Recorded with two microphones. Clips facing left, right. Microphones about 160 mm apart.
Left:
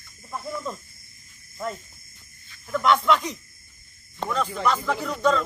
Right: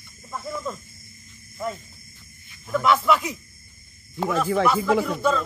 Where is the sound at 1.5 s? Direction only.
Centre (ahead or behind).